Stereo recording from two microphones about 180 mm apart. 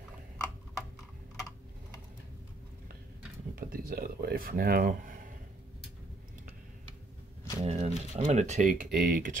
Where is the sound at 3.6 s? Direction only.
55° right (ahead or behind).